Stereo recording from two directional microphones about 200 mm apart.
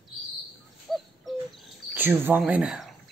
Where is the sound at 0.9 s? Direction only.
Centre (ahead or behind).